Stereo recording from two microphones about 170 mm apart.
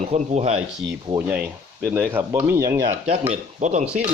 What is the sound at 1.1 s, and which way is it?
Speech, 10° right (ahead or behind).